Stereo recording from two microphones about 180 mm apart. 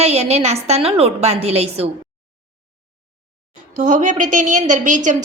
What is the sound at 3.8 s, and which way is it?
A woman's voice, 45° right (ahead or behind).